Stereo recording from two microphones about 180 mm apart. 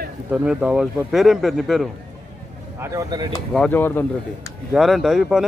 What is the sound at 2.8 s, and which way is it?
Speech, 15° right (ahead or behind).